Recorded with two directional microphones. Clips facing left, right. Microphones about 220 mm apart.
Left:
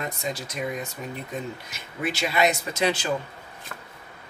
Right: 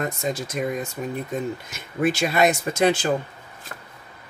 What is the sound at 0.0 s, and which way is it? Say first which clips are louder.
Speech: right 5 dB; 50° right (ahead or behind).